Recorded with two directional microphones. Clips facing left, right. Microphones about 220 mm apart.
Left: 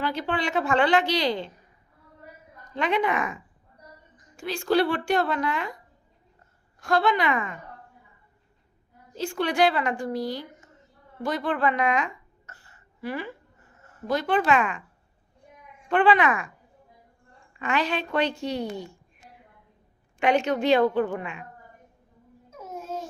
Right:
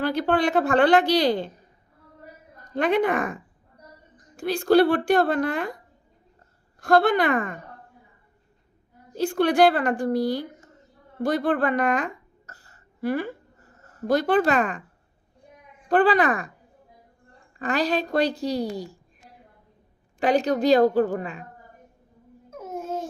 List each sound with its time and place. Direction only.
0.0 s a woman's voice: 40° right (ahead or behind)
1.0 s a woman's voice: 35° right (ahead or behind)
1.3 s a woman's voice: 45° right (ahead or behind)
2.7 s a woman's voice: 50° right (ahead or behind)
4.4 s a woman's voice: 35° right (ahead or behind)
6.8 s a woman's voice: 55° right (ahead or behind)
9.1 s a woman's voice: 55° right (ahead or behind)
12.5 s a sound: 40° right (ahead or behind)
15.9 s a woman's voice: 35° right (ahead or behind)
17.6 s a woman's voice: 35° right (ahead or behind)
20.1 s a woman's voice: 35° right (ahead or behind)
22.4 s babbling: 50° right (ahead or behind)